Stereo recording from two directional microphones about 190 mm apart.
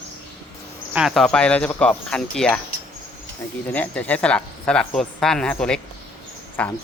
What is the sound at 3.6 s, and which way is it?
Speech, 10° left (ahead or behind).